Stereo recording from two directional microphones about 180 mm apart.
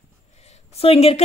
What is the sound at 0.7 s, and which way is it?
Speech, 35° left (ahead or behind).